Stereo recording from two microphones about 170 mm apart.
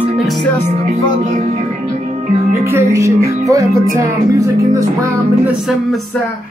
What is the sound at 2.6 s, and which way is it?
Speech, 15° right (ahead or behind).